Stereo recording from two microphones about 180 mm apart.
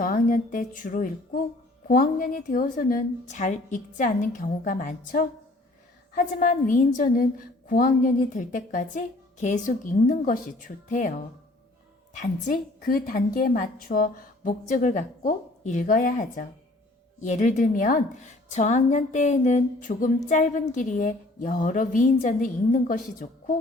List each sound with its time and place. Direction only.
0.0 s a woman's voice: 50° left (ahead or behind)
12.2 s a woman's voice: 50° left (ahead or behind)